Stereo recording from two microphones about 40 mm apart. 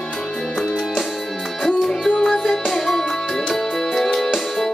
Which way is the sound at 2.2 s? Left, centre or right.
Centre.